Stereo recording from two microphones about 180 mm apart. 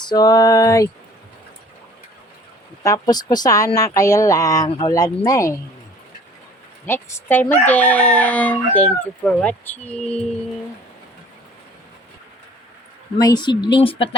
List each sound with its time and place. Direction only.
0.0 s speech: 25° left (ahead or behind)
2.8 s speech: 20° left (ahead or behind)
6.8 s chicken: 15° left (ahead or behind)
13.1 s speech: 20° left (ahead or behind)